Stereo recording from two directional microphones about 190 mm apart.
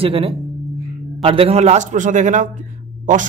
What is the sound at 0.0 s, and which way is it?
A man's voice, 30° right (ahead or behind).